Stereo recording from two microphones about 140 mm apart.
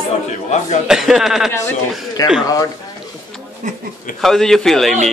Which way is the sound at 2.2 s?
25° left (ahead or behind).